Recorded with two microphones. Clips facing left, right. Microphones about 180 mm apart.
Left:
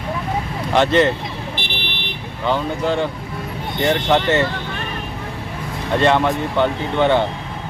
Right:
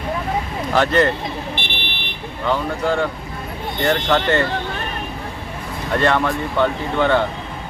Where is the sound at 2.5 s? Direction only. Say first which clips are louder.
Even; 25° left (ahead or behind).